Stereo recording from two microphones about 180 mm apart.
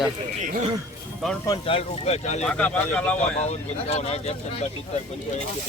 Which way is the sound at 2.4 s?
5° left (ahead or behind).